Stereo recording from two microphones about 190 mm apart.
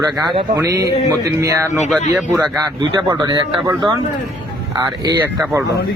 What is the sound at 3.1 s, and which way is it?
Speech, 20° right (ahead or behind).